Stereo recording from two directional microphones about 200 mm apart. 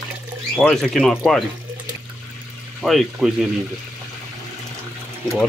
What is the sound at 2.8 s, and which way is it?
Speech, centre (ahead or behind).